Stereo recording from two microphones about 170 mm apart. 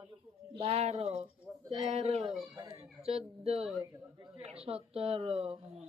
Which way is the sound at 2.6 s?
30° right (ahead or behind).